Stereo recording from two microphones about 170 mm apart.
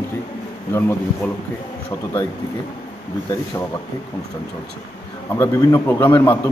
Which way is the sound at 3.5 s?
20° left (ahead or behind).